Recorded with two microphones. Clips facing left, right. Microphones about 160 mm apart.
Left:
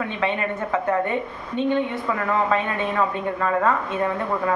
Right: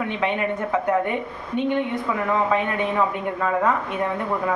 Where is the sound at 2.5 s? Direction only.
15° right (ahead or behind).